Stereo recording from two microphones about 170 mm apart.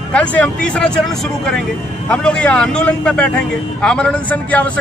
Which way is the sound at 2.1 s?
5° left (ahead or behind).